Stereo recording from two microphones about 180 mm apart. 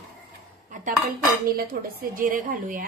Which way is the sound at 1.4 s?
55° right (ahead or behind).